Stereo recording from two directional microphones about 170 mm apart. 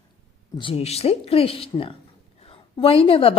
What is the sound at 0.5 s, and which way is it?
A woman's voice, 30° left (ahead or behind).